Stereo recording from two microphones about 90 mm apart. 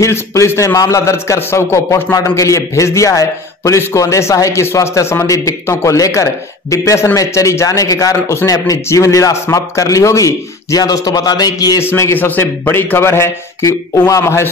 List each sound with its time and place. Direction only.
0.0 s a man's voice: 35° left (ahead or behind)
11.8 s a man's voice: 25° left (ahead or behind)